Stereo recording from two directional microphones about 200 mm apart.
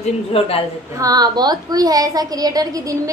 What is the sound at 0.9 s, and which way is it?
A woman's voice, 20° right (ahead or behind).